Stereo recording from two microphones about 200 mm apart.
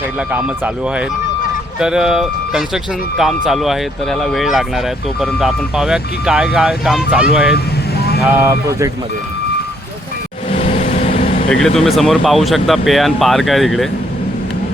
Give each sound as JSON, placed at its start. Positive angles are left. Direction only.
{"t": 0.3, "sound": "speech", "side_deg": -5}
{"t": 10.5, "sound": "vehicle", "side_deg": 30}
{"t": 11.9, "sound": "speech", "side_deg": 0}